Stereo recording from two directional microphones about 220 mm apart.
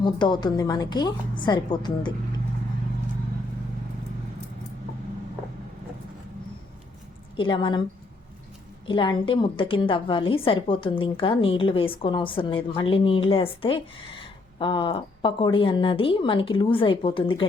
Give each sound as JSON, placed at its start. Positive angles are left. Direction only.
{"t": 0.0, "sound": "a woman's voice", "side_deg": 20}
{"t": 7.3, "sound": "a woman's voice", "side_deg": 20}
{"t": 8.9, "sound": "a woman's voice", "side_deg": 20}